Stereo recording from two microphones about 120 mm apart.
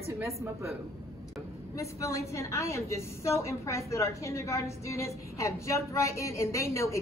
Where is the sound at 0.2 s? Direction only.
25° right (ahead or behind).